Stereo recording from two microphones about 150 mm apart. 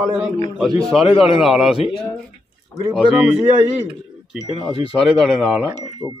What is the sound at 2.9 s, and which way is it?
Speech, 5° right (ahead or behind).